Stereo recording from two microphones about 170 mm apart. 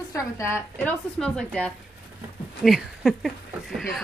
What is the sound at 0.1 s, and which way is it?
Speech, 15° left (ahead or behind).